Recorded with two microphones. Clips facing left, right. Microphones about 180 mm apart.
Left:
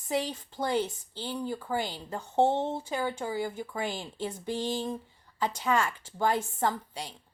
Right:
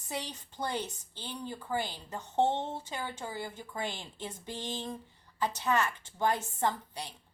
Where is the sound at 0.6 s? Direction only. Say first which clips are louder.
Left 6 dB; 10° left (ahead or behind).